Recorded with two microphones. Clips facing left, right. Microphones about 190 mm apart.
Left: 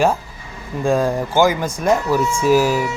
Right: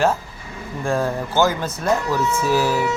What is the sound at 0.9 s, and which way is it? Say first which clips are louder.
Speech: left 4 dB; 15° left (ahead or behind).